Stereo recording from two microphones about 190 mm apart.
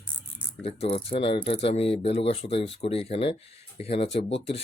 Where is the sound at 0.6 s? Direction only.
30° left (ahead or behind).